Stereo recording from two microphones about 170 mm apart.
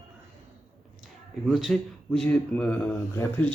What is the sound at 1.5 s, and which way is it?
Speech, centre (ahead or behind).